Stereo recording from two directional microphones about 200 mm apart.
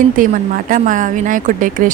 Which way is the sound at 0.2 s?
40° right (ahead or behind).